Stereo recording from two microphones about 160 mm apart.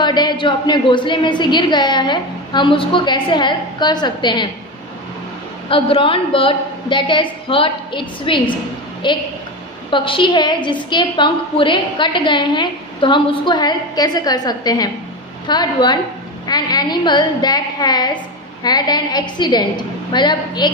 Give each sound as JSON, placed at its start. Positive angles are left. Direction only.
{"t": 0.0, "sound": "a woman's voice", "side_deg": 25}
{"t": 5.7, "sound": "a woman's voice", "side_deg": 35}